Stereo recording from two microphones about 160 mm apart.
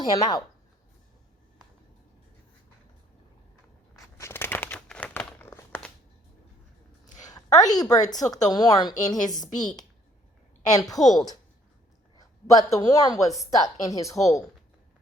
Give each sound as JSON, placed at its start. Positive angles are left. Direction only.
{"t": 0.0, "sound": "speech", "side_deg": 25}
{"t": 4.2, "sound": "crumpling", "side_deg": 15}
{"t": 7.2, "sound": "a sound", "side_deg": 25}
{"t": 8.2, "sound": "speech", "side_deg": 25}
{"t": 11.0, "sound": "a woman's voice", "side_deg": 0}
{"t": 12.2, "sound": "a man's voice", "side_deg": 20}